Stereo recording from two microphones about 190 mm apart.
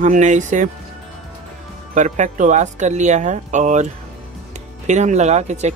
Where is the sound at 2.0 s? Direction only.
40° right (ahead or behind).